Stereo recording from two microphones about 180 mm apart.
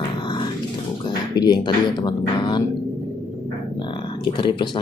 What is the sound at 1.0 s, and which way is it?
Speech, 25° left (ahead or behind).